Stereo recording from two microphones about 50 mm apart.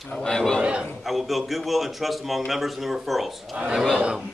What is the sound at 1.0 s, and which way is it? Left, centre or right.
A man's voice, centre.